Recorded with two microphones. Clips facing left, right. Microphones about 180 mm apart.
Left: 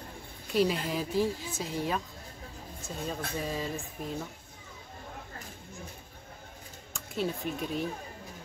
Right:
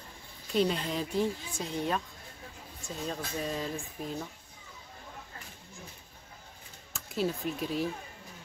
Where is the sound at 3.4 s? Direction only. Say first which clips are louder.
Even; centre (ahead or behind).